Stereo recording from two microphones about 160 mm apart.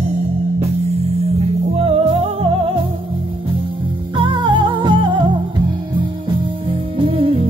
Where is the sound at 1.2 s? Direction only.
40° right (ahead or behind).